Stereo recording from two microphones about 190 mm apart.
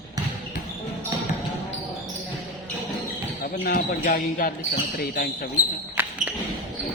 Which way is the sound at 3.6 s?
50° left (ahead or behind).